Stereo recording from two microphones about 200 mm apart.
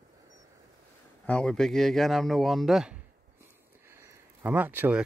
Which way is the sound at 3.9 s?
10° right (ahead or behind).